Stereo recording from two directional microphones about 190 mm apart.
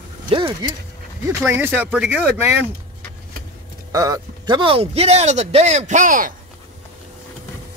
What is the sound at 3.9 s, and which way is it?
Speech, 20° right (ahead or behind).